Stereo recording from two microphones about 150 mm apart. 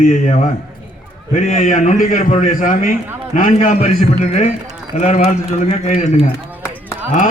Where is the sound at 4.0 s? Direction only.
50° left (ahead or behind).